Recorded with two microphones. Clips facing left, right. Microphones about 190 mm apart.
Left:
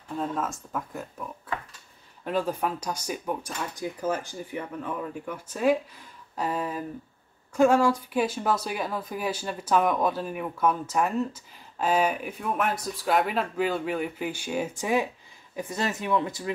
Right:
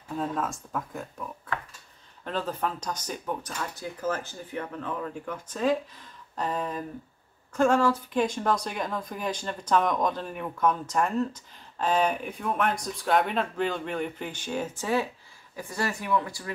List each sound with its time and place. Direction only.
0.1 s speech: centre (ahead or behind)
2.2 s speech: 10° left (ahead or behind)